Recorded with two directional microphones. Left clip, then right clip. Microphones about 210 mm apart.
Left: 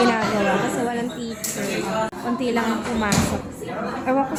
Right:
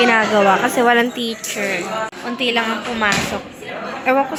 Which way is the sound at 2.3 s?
5° right (ahead or behind).